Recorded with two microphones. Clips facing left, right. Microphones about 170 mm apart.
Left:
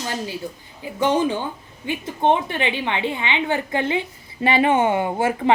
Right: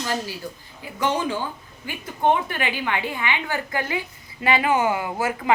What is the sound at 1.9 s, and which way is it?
A woman's voice, 25° left (ahead or behind).